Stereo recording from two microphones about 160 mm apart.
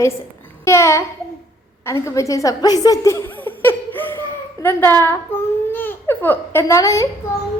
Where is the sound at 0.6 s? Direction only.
15° left (ahead or behind).